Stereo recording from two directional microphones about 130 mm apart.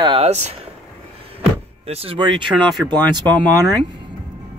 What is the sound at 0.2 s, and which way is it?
Speech, 55° right (ahead or behind).